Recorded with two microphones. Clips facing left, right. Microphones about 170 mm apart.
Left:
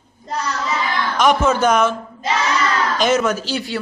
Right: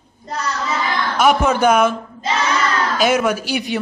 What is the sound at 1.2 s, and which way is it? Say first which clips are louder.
Speech: right 1 dB; 10° right (ahead or behind).